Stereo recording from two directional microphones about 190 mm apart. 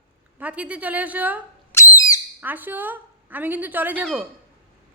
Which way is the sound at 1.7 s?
15° left (ahead or behind).